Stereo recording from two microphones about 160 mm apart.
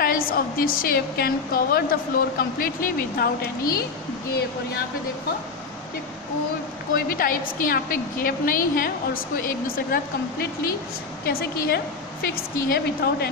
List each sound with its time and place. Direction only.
0.0 s a woman's voice: 65° left (ahead or behind)
7.1 s a woman's voice: 60° left (ahead or behind)
11.2 s a woman's voice: 70° left (ahead or behind)